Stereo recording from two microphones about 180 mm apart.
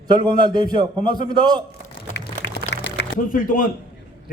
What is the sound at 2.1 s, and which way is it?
Music, 75° left (ahead or behind).